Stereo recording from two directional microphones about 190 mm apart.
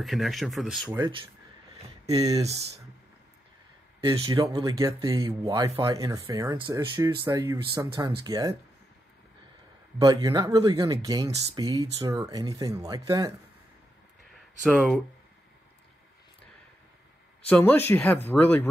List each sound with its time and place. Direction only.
0.0 s speech: centre (ahead or behind)
0.9 s speech: 25° right (ahead or behind)
4.0 s speech: 25° right (ahead or behind)
9.9 s speech: 20° right (ahead or behind)
14.6 s speech: centre (ahead or behind)
17.5 s speech: 10° left (ahead or behind)